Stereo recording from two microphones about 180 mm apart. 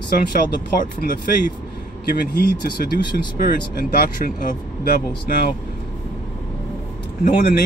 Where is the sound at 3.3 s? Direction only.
55° left (ahead or behind).